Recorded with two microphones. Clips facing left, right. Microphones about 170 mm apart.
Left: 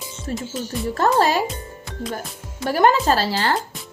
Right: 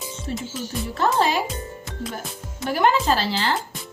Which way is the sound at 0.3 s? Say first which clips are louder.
Left 3 dB; 45° left (ahead or behind).